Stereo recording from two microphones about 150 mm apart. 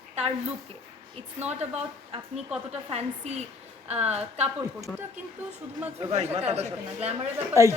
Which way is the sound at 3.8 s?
45° right (ahead or behind).